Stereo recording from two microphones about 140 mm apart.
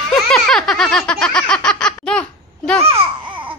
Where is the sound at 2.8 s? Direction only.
40° right (ahead or behind).